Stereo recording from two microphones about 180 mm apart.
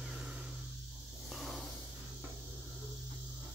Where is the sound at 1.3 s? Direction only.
Centre (ahead or behind).